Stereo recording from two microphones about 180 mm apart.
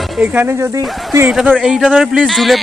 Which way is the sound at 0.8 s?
Centre (ahead or behind).